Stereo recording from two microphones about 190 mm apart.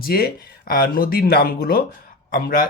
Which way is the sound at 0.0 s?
55° left (ahead or behind).